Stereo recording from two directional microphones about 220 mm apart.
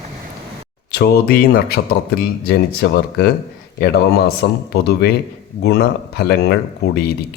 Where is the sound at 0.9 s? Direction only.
45° left (ahead or behind).